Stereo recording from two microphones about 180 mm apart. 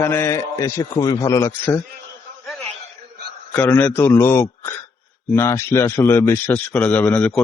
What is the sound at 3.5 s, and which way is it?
Speech, 10° left (ahead or behind).